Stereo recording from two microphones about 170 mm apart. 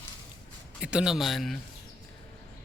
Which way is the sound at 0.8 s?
5° right (ahead or behind).